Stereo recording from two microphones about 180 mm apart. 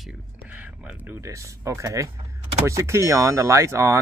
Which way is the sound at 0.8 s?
15° right (ahead or behind).